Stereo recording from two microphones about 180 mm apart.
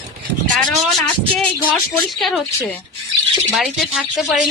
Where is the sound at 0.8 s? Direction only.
Centre (ahead or behind).